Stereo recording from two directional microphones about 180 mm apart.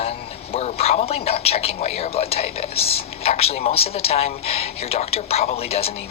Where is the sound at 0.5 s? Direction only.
35° left (ahead or behind).